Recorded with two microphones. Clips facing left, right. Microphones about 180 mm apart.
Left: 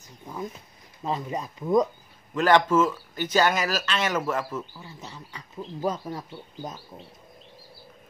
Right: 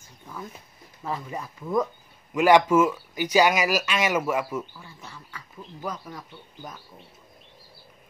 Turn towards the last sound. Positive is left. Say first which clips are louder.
# left 5 dB
turn(degrees=25)  # may be behind; listen again after turning